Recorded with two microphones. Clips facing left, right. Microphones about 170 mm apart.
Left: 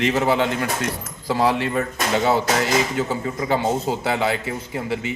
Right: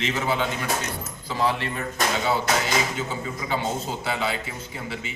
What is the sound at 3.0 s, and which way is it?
A man's voice, 60° left (ahead or behind).